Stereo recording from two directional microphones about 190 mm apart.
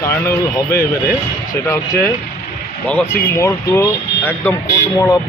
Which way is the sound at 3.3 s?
15° left (ahead or behind).